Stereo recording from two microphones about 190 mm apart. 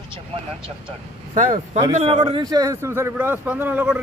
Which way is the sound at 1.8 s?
25° right (ahead or behind).